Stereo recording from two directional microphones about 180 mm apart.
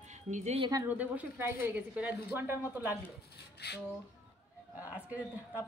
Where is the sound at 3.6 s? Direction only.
65° left (ahead or behind).